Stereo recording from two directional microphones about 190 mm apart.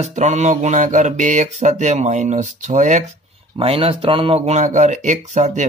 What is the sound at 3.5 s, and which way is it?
Speech, 30° right (ahead or behind).